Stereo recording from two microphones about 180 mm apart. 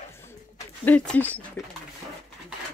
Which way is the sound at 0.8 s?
5° left (ahead or behind).